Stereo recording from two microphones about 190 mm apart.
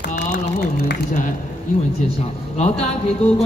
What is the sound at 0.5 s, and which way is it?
Speech, 55° left (ahead or behind).